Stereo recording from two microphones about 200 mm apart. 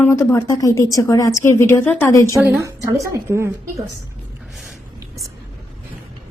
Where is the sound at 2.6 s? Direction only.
15° right (ahead or behind).